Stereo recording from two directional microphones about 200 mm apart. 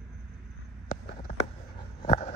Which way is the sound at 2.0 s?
30° left (ahead or behind).